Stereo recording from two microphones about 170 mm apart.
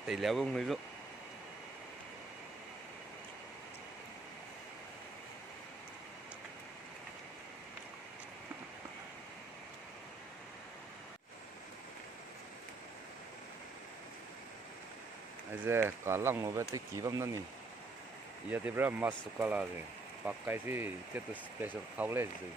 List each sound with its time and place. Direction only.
0.0 s speech: centre (ahead or behind)
15.6 s speech: 15° right (ahead or behind)
18.5 s speech: 10° right (ahead or behind)